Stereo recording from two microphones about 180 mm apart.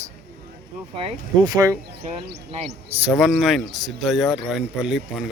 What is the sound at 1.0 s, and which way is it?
Speech, 30° right (ahead or behind).